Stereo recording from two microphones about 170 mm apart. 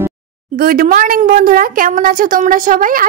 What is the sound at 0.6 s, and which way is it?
A woman's voice, 60° right (ahead or behind).